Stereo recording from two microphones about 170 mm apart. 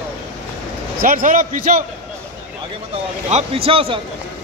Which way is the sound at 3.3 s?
40° right (ahead or behind).